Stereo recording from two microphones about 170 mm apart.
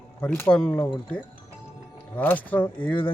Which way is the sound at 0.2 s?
5° left (ahead or behind).